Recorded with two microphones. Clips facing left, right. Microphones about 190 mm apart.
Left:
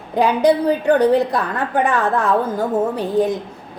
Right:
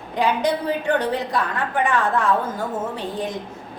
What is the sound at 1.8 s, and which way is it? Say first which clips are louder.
Speech: even; 40° left (ahead or behind).